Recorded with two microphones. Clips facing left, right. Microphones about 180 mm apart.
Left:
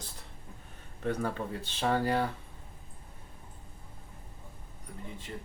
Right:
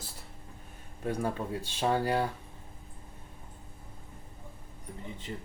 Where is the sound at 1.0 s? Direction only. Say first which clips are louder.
Even; 10° right (ahead or behind).